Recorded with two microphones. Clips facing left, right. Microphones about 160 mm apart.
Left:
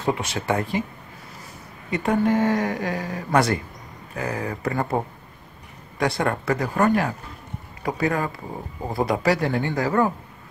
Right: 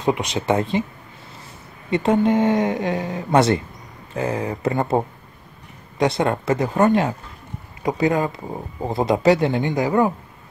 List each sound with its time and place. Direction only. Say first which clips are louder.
0.0 s speech: right 4 dB; 20° right (ahead or behind)
1.9 s speech: right 3 dB; 25° right (ahead or behind)